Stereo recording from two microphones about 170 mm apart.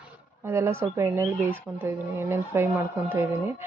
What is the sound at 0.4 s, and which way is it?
Speech, 15° right (ahead or behind).